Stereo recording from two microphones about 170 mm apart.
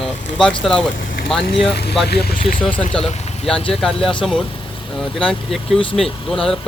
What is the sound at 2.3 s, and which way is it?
Speech, 60° left (ahead or behind).